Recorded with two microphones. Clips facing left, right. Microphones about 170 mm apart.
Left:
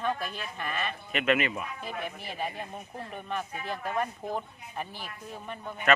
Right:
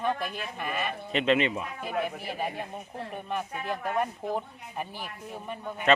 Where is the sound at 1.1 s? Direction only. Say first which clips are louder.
Right 2 dB; 30° right (ahead or behind).